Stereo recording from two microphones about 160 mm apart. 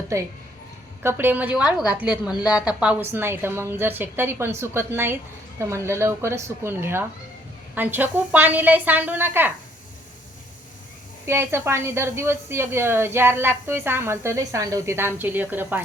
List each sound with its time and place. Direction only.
0.1 s a woman's voice: 20° right (ahead or behind)
11.3 s a woman's voice: 15° right (ahead or behind)